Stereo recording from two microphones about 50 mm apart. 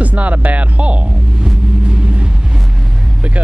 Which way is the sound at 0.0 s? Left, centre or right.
Right.